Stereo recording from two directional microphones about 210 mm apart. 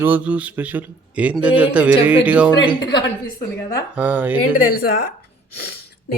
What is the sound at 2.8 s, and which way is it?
Speech, 20° left (ahead or behind).